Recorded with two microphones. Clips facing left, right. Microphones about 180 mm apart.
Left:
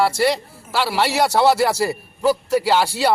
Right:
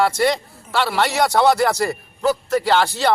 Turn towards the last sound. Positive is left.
turn(degrees=10)  # may be behind; listen again after turning